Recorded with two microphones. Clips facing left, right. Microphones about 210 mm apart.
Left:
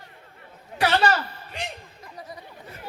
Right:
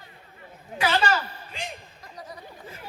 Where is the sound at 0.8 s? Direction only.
70° left (ahead or behind).